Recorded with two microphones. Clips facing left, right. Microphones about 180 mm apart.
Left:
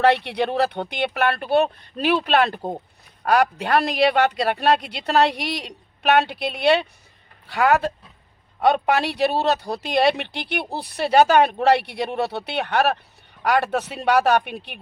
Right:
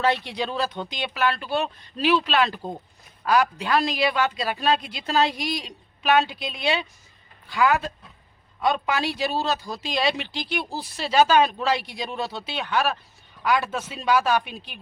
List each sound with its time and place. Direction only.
0.0 s speech: 65° left (ahead or behind)